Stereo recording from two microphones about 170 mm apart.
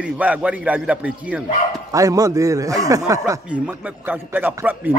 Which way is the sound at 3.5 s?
10° right (ahead or behind).